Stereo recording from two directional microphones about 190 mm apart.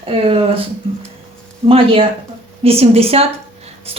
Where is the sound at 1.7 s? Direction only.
30° right (ahead or behind).